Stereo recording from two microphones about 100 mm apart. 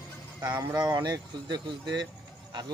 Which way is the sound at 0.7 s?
45° right (ahead or behind).